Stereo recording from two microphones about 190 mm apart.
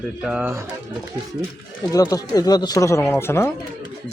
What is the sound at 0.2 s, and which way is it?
Speech, 5° right (ahead or behind).